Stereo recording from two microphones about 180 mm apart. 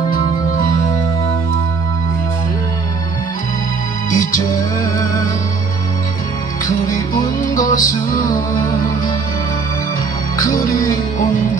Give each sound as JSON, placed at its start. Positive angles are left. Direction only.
{"t": 0.1, "sound": "music", "side_deg": 50}
{"t": 4.1, "sound": "music", "side_deg": 50}
{"t": 6.9, "sound": "music", "side_deg": 50}
{"t": 10.3, "sound": "music", "side_deg": 50}